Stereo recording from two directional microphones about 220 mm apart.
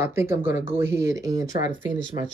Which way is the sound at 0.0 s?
10° right (ahead or behind).